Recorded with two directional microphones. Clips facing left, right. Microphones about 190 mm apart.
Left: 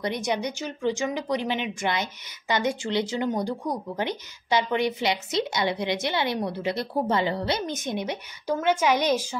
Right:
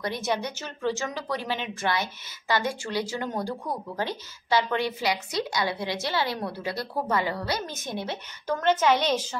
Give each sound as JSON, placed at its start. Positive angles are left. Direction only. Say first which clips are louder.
{"t": 0.0, "sound": "a woman's voice", "louder": "left 2 dB", "side_deg": 15}